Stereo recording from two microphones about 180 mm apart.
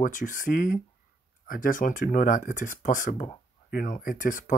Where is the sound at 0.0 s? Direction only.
45° left (ahead or behind).